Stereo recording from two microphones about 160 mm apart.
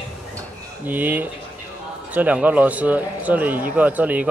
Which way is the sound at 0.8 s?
10° right (ahead or behind).